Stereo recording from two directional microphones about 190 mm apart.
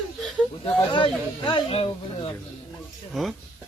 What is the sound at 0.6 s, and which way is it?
Speech, 25° left (ahead or behind).